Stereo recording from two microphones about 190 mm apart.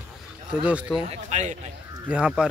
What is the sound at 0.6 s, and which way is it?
Speech, 5° right (ahead or behind).